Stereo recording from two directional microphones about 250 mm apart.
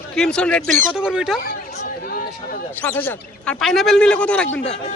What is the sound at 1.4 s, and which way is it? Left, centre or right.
Chatter, left.